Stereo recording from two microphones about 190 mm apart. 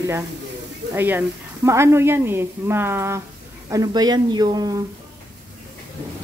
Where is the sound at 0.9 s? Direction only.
10° right (ahead or behind).